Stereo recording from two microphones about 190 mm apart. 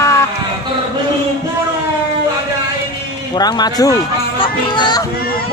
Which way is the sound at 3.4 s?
20° left (ahead or behind).